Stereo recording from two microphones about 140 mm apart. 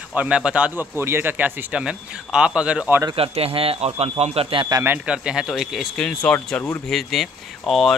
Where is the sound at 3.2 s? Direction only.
45° right (ahead or behind).